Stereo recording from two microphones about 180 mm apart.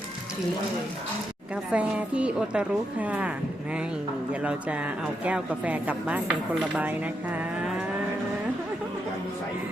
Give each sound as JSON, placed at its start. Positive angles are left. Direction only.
{"t": 1.7, "sound": "speech", "side_deg": -5}